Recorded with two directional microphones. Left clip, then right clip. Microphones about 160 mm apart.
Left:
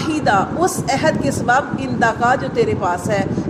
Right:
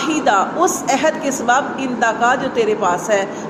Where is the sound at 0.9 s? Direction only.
30° left (ahead or behind).